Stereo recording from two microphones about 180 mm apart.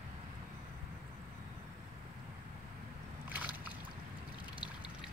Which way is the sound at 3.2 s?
10° right (ahead or behind).